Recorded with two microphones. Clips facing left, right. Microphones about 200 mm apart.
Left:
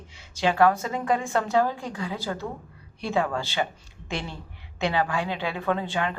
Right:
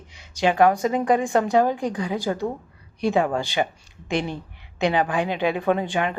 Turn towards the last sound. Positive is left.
turn(degrees=-15)  # may be behind; listen again after turning